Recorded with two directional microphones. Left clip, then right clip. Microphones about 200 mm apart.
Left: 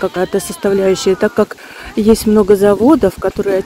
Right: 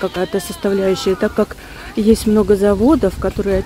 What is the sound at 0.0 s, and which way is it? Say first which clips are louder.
Speech: left 3 dB; 10° left (ahead or behind).